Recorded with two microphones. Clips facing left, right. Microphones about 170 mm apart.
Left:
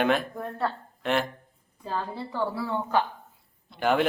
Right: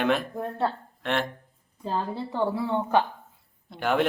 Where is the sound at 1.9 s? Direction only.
25° right (ahead or behind).